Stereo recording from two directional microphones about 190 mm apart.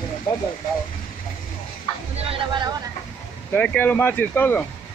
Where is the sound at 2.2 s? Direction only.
30° right (ahead or behind).